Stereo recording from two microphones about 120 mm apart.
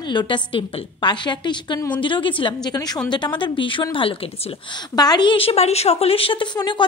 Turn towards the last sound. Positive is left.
turn(degrees=40)  # may be behind; listen again after turning